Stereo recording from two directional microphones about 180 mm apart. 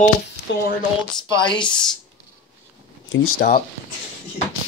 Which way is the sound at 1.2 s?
25° left (ahead or behind).